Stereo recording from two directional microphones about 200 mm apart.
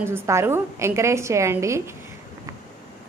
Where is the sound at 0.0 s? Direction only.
10° right (ahead or behind).